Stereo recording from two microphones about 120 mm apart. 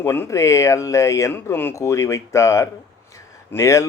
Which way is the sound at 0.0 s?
20° left (ahead or behind).